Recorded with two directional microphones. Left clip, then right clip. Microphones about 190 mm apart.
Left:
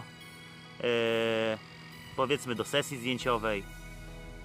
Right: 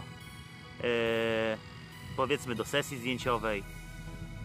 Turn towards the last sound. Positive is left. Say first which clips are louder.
# left 1 dB
turn(degrees=0)  # may be behind; listen again after turning